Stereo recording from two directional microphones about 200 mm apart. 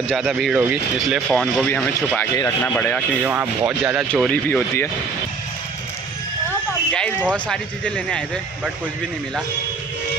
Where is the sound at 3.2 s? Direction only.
10° right (ahead or behind).